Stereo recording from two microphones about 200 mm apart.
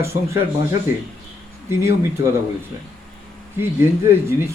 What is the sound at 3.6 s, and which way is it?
Speech, 10° right (ahead or behind).